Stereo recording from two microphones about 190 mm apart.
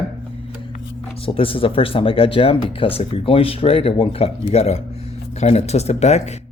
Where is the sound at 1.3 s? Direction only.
30° left (ahead or behind).